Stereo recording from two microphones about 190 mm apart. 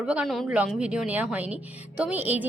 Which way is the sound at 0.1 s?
Centre (ahead or behind).